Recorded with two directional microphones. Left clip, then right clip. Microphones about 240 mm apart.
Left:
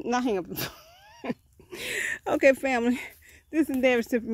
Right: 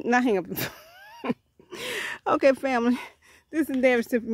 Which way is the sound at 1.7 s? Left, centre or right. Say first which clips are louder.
Left 1 dB; right.